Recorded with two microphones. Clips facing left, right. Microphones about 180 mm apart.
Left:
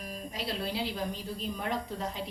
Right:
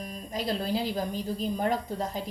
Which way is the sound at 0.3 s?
40° right (ahead or behind).